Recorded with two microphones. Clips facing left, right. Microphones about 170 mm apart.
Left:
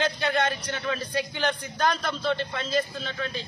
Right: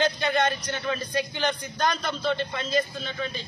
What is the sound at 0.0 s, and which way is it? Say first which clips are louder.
Speech: right 2 dB; centre (ahead or behind).